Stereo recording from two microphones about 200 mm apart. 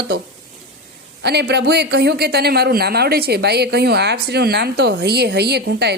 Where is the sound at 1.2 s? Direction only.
55° right (ahead or behind).